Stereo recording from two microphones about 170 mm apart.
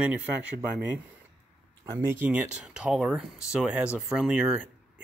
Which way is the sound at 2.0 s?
10° right (ahead or behind).